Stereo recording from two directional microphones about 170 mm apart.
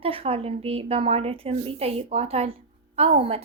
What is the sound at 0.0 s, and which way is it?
Speech, 35° right (ahead or behind).